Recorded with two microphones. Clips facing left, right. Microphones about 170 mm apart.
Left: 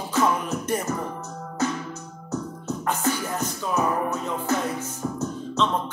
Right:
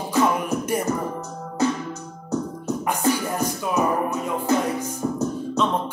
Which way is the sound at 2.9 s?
10° right (ahead or behind).